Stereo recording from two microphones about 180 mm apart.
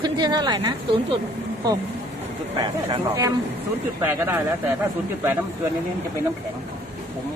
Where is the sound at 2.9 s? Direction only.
20° right (ahead or behind).